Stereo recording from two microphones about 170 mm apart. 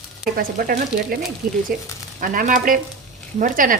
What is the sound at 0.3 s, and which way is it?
A woman's voice, 60° right (ahead or behind).